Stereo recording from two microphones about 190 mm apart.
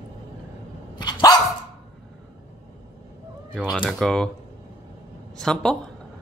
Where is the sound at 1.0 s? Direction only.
20° left (ahead or behind).